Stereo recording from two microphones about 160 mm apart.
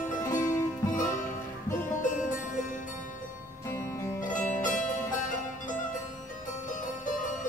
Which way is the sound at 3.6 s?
15° left (ahead or behind).